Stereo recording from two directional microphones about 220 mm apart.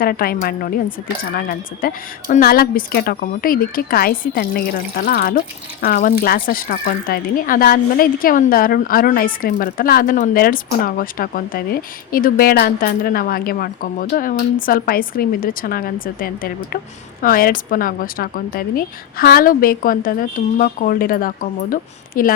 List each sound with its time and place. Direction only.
0.0 s speech: 40° left (ahead or behind)